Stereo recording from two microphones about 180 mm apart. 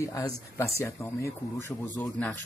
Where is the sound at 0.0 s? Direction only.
15° left (ahead or behind).